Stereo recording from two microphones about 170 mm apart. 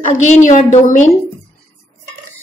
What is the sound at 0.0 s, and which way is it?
Speech, 45° left (ahead or behind).